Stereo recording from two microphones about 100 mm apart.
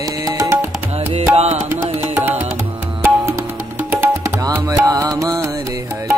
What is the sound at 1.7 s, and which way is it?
Music, 25° right (ahead or behind).